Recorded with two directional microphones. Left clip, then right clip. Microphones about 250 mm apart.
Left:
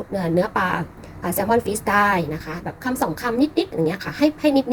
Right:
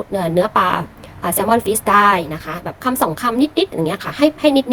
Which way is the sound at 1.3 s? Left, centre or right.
Centre.